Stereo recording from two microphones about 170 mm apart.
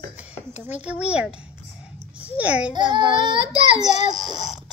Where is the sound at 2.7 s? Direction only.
25° right (ahead or behind).